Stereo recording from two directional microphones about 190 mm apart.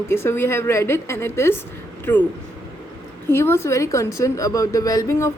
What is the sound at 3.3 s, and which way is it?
A woman's voice, 10° left (ahead or behind).